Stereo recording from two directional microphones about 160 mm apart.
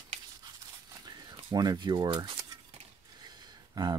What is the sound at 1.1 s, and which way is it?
Speech, 25° right (ahead or behind).